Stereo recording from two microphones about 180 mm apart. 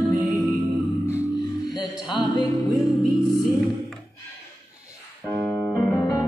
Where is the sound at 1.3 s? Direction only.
25° left (ahead or behind).